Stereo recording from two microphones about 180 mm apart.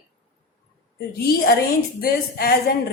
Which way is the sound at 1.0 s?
60° left (ahead or behind).